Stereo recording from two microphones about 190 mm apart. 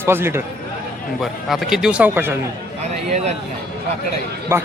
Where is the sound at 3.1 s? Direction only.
35° right (ahead or behind).